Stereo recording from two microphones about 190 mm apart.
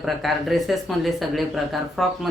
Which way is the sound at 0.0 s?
Centre (ahead or behind).